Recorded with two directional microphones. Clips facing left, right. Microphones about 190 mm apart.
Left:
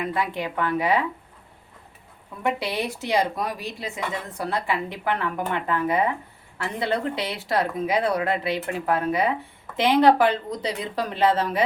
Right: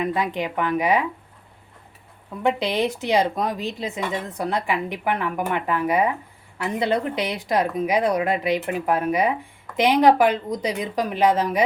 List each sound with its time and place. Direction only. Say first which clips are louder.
0.0 s a woman's voice: right 3 dB; 20° right (ahead or behind)
2.4 s a woman's voice: right 4 dB; 20° right (ahead or behind)